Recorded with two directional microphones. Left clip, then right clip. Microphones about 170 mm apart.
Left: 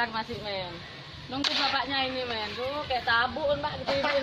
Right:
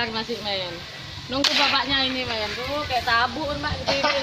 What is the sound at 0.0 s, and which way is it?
Speech, 25° right (ahead or behind).